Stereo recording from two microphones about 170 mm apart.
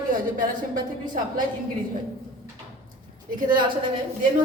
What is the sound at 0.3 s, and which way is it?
Speech, 50° right (ahead or behind).